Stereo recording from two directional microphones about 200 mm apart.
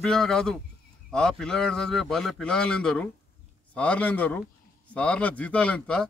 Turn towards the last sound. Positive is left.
turn(degrees=5)  # may be behind; listen again after turning